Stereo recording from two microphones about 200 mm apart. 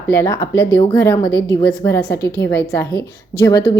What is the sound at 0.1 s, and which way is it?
A woman's voice, 15° left (ahead or behind).